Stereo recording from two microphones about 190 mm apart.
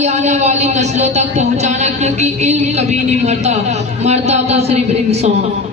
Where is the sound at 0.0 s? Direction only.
35° right (ahead or behind).